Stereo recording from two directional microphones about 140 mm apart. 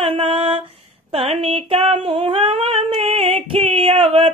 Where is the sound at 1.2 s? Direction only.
45° right (ahead or behind).